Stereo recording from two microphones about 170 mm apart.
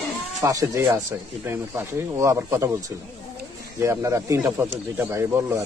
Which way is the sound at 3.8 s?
15° right (ahead or behind).